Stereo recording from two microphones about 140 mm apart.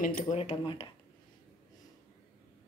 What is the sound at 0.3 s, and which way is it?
Speech, 50° left (ahead or behind).